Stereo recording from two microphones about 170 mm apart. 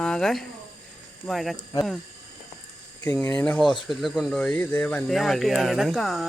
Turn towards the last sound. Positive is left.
turn(degrees=0)  # may be behind; listen again after turning